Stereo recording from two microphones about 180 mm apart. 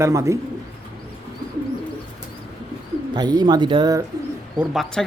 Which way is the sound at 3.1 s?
25° right (ahead or behind).